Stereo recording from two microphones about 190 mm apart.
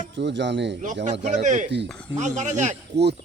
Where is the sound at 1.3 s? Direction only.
40° right (ahead or behind).